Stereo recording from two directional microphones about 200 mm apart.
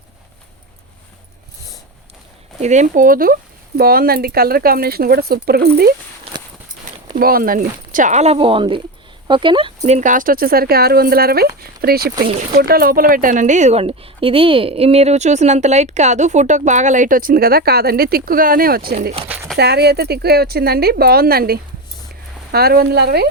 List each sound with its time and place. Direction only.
2.6 s a woman's voice: 35° right (ahead or behind); by 5.9 s 50° right (ahead or behind)
7.2 s a woman's voice: 45° right (ahead or behind)